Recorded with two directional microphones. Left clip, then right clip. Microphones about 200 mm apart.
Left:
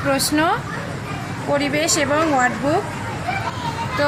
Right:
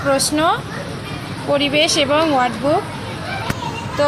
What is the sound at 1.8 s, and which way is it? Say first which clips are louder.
Speech: right 3 dB; 10° right (ahead or behind).